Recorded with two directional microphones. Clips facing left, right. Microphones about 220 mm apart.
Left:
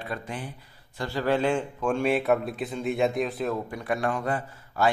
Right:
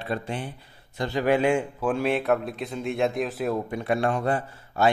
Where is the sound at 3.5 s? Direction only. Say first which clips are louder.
Right 3 dB; 25° right (ahead or behind).